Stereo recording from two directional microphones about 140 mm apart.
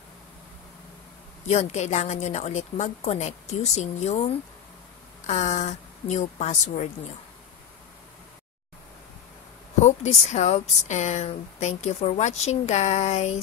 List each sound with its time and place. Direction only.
1.5 s speech: 55° left (ahead or behind)
5.2 s a woman's voice: 55° left (ahead or behind)
9.8 s speech: 55° left (ahead or behind)